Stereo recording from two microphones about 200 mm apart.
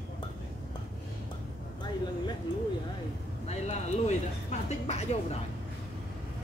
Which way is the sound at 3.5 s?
35° left (ahead or behind).